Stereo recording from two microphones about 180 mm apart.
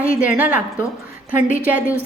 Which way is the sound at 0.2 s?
10° right (ahead or behind).